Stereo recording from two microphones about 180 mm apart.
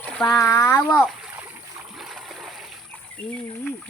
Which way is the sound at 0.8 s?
Centre (ahead or behind).